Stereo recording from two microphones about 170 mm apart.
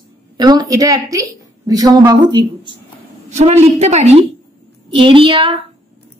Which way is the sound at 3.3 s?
40° right (ahead or behind).